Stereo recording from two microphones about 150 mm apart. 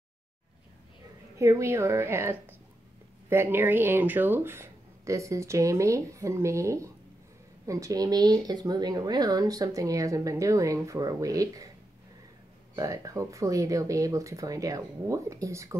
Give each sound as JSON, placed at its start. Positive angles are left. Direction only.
{"t": 1.4, "sound": "speech", "side_deg": -20}
{"t": 12.7, "sound": "speech", "side_deg": -25}